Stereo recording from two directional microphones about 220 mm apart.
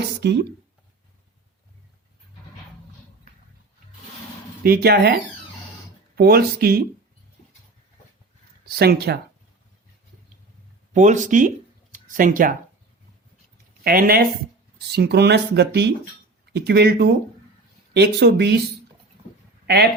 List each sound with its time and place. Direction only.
0.2 s speech: 50° right (ahead or behind)
4.6 s speech: 45° right (ahead or behind)
8.6 s speech: 45° right (ahead or behind)
10.9 s speech: 35° right (ahead or behind)
13.8 s speech: 40° right (ahead or behind)
19.6 s speech: 45° right (ahead or behind)